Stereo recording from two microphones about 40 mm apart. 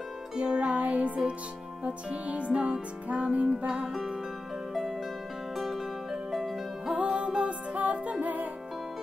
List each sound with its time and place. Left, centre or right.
0.4 s music: right
0.7 s music: right
3.6 s music: centre
6.9 s music: right